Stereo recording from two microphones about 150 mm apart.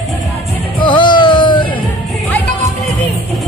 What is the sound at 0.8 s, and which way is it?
Music, 30° left (ahead or behind).